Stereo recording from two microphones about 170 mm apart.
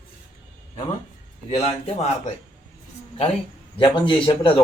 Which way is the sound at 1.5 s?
35° left (ahead or behind).